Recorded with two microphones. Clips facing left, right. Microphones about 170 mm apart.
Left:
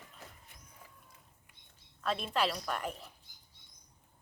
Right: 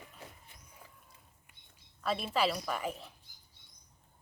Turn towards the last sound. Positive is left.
turn(degrees=0)  # may be behind; listen again after turning